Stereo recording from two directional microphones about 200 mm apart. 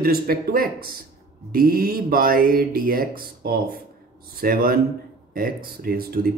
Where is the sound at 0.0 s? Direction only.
50° right (ahead or behind).